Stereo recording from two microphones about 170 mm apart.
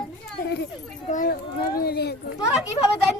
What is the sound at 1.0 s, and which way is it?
Children playing, 50° left (ahead or behind).